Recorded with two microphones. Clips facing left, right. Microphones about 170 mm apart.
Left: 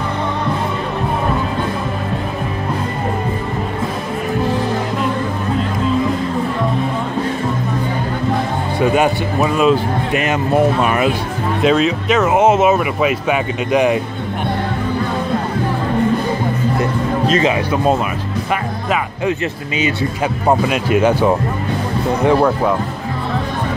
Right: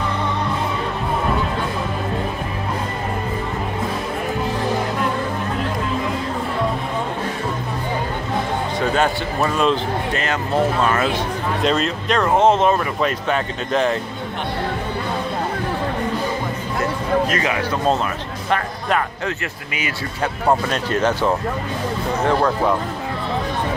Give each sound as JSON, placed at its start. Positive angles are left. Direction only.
{"t": 8.9, "sound": "speech", "side_deg": 10}
{"t": 11.6, "sound": "speech", "side_deg": 5}
{"t": 17.3, "sound": "speech", "side_deg": 20}
{"t": 18.5, "sound": "speech", "side_deg": 10}
{"t": 20.4, "sound": "speech", "side_deg": 10}